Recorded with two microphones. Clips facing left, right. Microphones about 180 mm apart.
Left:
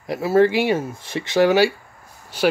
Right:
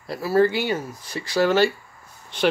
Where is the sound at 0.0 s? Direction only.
20° left (ahead or behind).